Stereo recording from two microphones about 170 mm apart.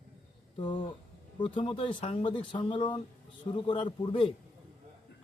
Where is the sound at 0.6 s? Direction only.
30° left (ahead or behind).